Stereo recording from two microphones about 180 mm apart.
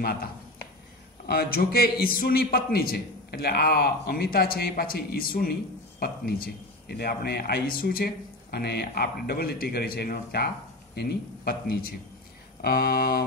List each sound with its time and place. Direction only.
1.2 s a man's voice: 60° left (ahead or behind)